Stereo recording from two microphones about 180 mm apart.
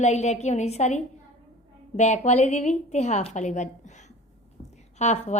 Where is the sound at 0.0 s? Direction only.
40° left (ahead or behind).